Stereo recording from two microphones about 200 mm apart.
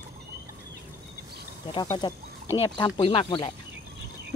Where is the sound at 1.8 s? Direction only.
20° left (ahead or behind).